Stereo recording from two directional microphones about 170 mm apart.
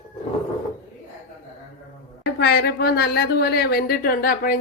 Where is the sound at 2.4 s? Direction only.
70° left (ahead or behind).